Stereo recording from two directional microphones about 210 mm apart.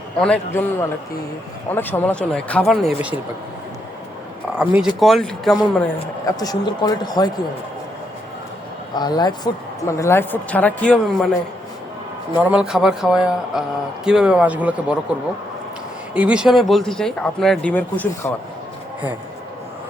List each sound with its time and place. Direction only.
0.2 s a woman's voice: 5° left (ahead or behind)
4.9 s speech: centre (ahead or behind)
6.2 s a woman's voice: 15° left (ahead or behind)
9.0 s a woman's voice: 20° left (ahead or behind); by 11.3 s 5° left (ahead or behind)
12.4 s speech: 5° right (ahead or behind)
16.1 s speech: 5° right (ahead or behind); by 18.3 s 10° left (ahead or behind)